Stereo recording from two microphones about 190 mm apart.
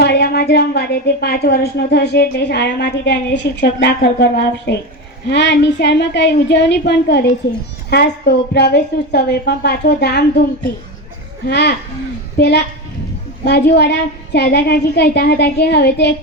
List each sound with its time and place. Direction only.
0.0 s a woman's voice: 60° left (ahead or behind)
11.4 s a woman's voice: 60° left (ahead or behind)